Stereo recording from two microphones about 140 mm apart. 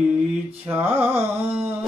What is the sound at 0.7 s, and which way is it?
Music, 15° right (ahead or behind).